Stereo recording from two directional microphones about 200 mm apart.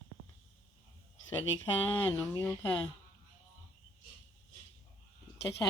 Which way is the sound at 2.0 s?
15° left (ahead or behind).